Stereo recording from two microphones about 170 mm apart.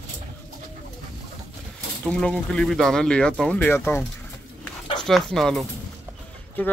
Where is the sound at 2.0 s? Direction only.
5° left (ahead or behind).